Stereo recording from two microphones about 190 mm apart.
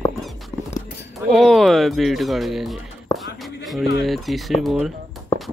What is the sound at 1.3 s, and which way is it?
Speech, centre (ahead or behind).